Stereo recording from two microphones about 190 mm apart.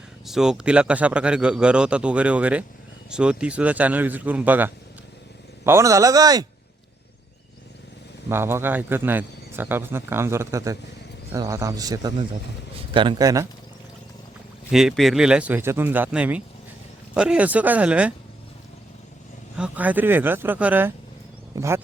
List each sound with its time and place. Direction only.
0.3 s a man's voice: 5° right (ahead or behind); by 6.4 s 20° right (ahead or behind)
8.3 s a man's voice: 10° right (ahead or behind)
14.7 s speech: centre (ahead or behind)
19.5 s speech: 5° right (ahead or behind)